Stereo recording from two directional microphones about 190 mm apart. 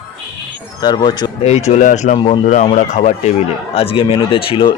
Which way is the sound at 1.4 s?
35° left (ahead or behind).